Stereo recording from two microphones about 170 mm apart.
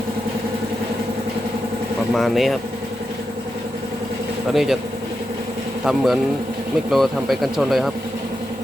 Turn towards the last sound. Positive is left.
turn(degrees=0)  # may be behind; listen again after turning